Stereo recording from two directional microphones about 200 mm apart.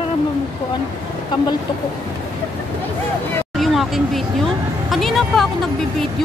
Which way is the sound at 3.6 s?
Centre (ahead or behind).